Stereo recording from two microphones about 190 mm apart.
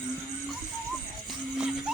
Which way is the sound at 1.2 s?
5° right (ahead or behind).